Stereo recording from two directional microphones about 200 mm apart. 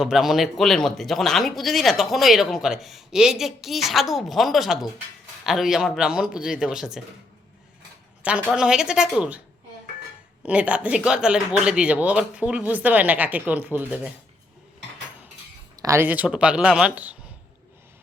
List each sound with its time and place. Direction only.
0.0 s speech: centre (ahead or behind)
8.2 s speech: 5° right (ahead or behind)
10.4 s speech: 5° right (ahead or behind)
15.7 s speech: 15° right (ahead or behind)